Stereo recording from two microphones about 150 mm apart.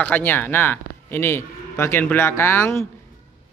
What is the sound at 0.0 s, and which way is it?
A man's voice, 10° left (ahead or behind).